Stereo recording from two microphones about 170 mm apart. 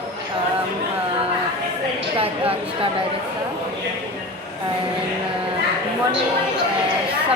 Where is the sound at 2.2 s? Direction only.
35° right (ahead or behind).